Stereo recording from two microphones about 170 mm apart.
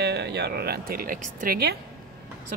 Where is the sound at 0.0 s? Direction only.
80° right.